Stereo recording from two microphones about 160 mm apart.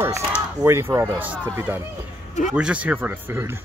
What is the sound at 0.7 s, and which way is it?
Speech, 15° right (ahead or behind).